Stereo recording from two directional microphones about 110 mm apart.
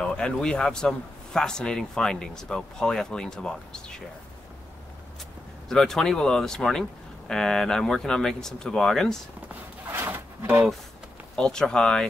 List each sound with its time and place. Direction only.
0.0 s a man's voice: 5° left (ahead or behind)
5.7 s a man's voice: 5° left (ahead or behind)
9.5 s a sound: 20° right (ahead or behind)
11.3 s speech: 5° left (ahead or behind)